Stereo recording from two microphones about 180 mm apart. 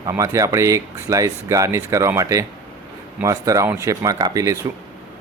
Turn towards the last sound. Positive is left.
turn(degrees=-20)  # may be behind; listen again after turning